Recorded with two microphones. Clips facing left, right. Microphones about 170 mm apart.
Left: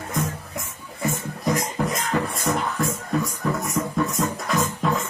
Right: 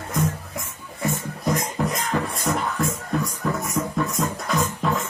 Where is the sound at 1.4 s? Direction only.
Centre (ahead or behind).